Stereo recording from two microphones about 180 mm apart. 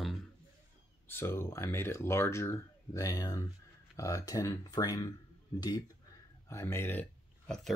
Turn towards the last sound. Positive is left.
turn(degrees=5)  # may be behind; listen again after turning